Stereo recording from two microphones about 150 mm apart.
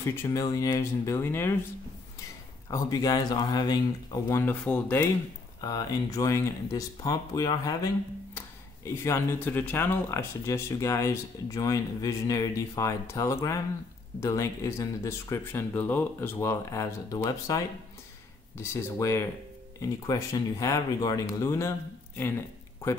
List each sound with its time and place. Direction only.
0.0 s speech: 20° left (ahead or behind)
2.7 s speech: 25° left (ahead or behind)
5.6 s speech: 25° left (ahead or behind)